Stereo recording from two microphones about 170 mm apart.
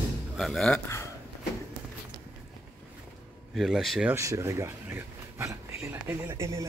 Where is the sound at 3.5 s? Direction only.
Centre (ahead or behind).